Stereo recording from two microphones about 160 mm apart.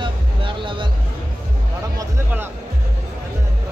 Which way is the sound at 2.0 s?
15° right (ahead or behind).